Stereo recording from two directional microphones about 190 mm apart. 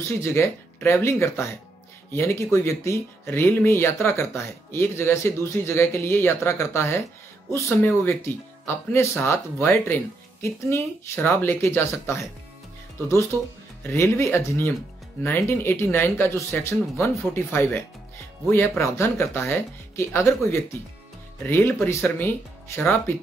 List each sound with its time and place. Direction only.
0.2 s speech: 15° left (ahead or behind)
13.8 s speech: 15° left (ahead or behind)